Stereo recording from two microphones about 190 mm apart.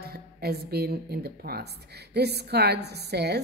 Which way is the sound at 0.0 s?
55° right (ahead or behind).